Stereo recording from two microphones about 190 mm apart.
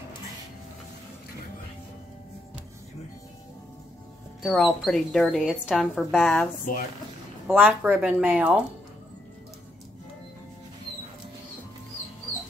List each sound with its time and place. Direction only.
4.4 s speech: centre (ahead or behind)
6.7 s speech: 45° left (ahead or behind)
7.4 s speech: 10° right (ahead or behind)